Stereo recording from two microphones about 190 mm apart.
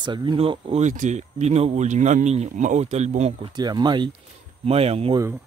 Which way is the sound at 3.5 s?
20° right (ahead or behind).